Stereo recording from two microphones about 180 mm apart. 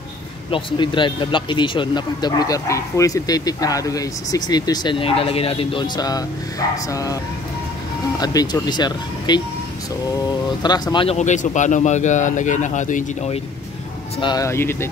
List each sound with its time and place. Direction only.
0.5 s speech: 25° left (ahead or behind)
8.2 s speech: 20° left (ahead or behind)
10.6 s speech: 25° left (ahead or behind)
11.1 s speech: 40° left (ahead or behind)
14.2 s speech: 20° left (ahead or behind)